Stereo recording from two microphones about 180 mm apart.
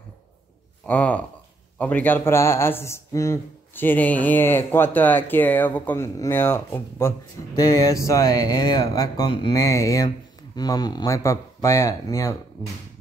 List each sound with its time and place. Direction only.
0.8 s speech: 10° left (ahead or behind)